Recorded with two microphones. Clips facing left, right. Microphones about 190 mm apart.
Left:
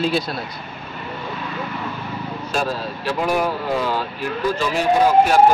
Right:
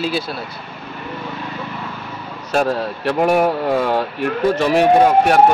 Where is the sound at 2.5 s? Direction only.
60° right (ahead or behind).